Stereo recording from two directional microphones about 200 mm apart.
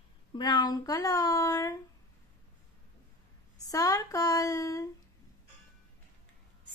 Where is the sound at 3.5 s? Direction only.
15° left (ahead or behind).